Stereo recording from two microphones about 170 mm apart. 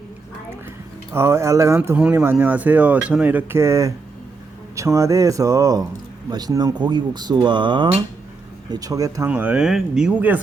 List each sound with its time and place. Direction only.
1.1 s speech: 15° right (ahead or behind)
9.3 s speech: 10° right (ahead or behind)